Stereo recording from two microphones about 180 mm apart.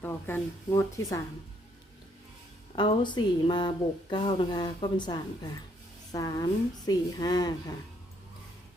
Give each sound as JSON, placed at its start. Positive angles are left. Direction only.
{"t": 0.0, "sound": "speech", "side_deg": 10}
{"t": 2.7, "sound": "speech", "side_deg": 25}